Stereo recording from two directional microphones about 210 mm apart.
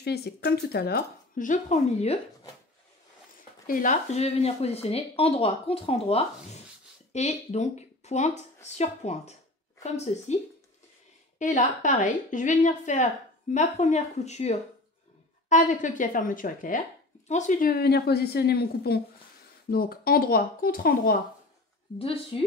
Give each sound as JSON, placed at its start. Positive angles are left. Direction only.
{"t": 0.0, "sound": "speech", "side_deg": 50}
{"t": 3.6, "sound": "a woman's voice", "side_deg": 40}
{"t": 21.9, "sound": "speech", "side_deg": 25}